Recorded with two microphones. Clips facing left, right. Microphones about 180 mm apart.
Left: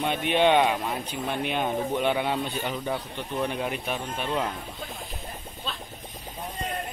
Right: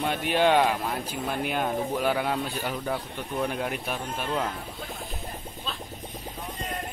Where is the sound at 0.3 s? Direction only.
5° right (ahead or behind).